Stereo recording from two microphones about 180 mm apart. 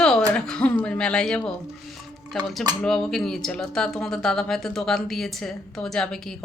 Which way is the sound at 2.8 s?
Centre (ahead or behind).